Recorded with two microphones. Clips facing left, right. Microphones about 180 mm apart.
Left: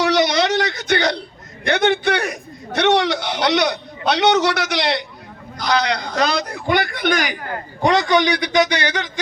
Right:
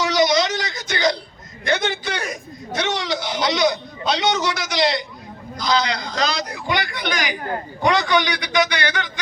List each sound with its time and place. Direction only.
0.0 s a sound: 65° left (ahead or behind)
1.6 s a man's voice: 65° left (ahead or behind)
7.8 s a man's voice: 35° left (ahead or behind)